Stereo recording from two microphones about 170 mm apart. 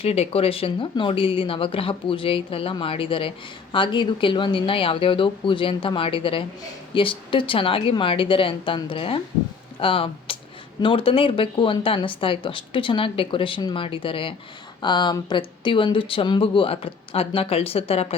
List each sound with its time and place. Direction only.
0.0 s speech: 35° left (ahead or behind)